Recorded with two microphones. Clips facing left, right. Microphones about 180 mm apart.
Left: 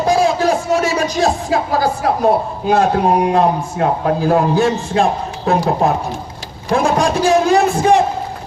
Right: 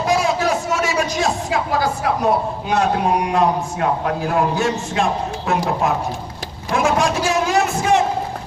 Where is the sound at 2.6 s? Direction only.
35° left (ahead or behind).